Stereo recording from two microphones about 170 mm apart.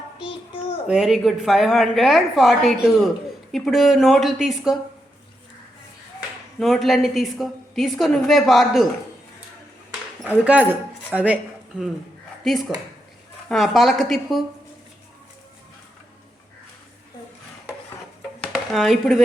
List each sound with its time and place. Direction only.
0.2 s child singing: 30° left (ahead or behind)
0.9 s a woman's voice: 5° right (ahead or behind)
6.1 s a woman's voice: centre (ahead or behind)
10.2 s a woman's voice: 10° right (ahead or behind)
18.3 s a sound: 5° left (ahead or behind)